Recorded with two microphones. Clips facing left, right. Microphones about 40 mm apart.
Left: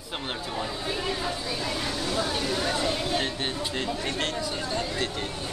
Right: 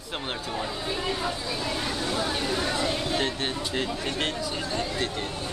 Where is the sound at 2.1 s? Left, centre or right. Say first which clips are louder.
Left 1 dB; centre.